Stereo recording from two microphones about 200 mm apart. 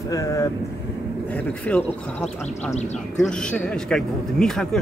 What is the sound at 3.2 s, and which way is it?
A man's voice, 5° left (ahead or behind).